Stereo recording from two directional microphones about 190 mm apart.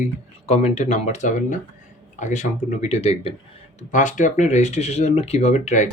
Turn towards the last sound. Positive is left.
turn(degrees=40)  # may be behind; listen again after turning